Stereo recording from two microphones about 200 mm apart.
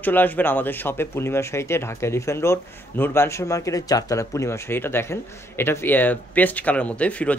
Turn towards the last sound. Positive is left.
turn(degrees=5)  # may be behind; listen again after turning